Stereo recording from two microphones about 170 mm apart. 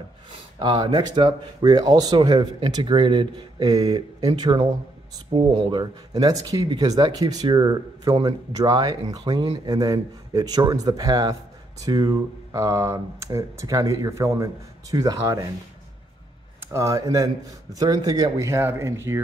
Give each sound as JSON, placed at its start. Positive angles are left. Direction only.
{"t": 0.3, "sound": "speech", "side_deg": -25}
{"t": 16.7, "sound": "speech", "side_deg": -20}